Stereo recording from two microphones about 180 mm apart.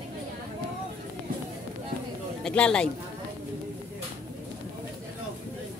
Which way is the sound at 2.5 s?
5° left (ahead or behind).